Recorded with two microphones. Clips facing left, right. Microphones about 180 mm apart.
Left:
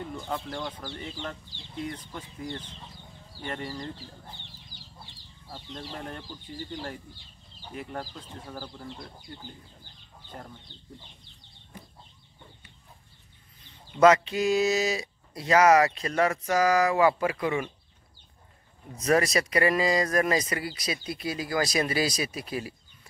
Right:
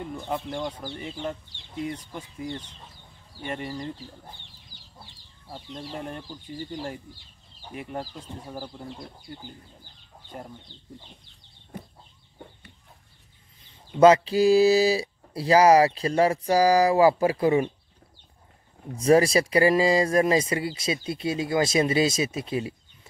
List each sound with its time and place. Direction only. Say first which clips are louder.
0.1 s speech: right 3 dB; 15° right (ahead or behind)
5.5 s speech: right 3 dB; 15° right (ahead or behind)
7.7 s speech: right 2 dB; 15° right (ahead or behind)
13.9 s speech: right 3 dB; 30° right (ahead or behind)
18.9 s speech: right 5 dB; 30° right (ahead or behind)